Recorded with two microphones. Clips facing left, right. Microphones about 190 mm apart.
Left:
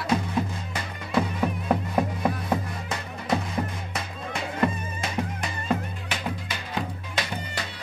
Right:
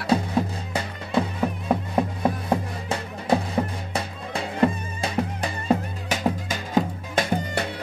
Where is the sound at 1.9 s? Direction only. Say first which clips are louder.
Right 2 dB; 25° right (ahead or behind).